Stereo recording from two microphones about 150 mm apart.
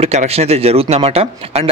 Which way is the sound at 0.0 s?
45° right (ahead or behind).